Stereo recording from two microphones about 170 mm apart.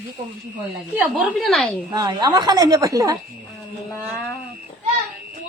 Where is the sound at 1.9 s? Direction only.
25° right (ahead or behind).